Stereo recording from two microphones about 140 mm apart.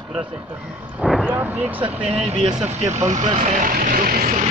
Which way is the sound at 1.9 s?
45° right (ahead or behind).